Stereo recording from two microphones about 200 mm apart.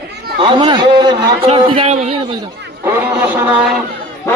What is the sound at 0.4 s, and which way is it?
A man's voice, 25° right (ahead or behind).